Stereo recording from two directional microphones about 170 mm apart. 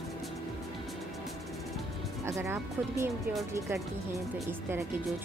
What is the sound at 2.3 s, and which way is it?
Speech, 15° right (ahead or behind).